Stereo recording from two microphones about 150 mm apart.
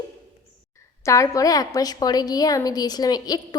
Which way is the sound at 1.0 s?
20° left (ahead or behind).